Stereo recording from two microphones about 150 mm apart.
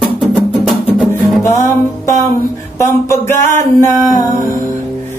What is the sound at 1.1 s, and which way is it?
Music, 20° left (ahead or behind).